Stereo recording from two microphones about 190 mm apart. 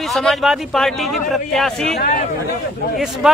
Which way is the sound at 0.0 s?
Centre (ahead or behind).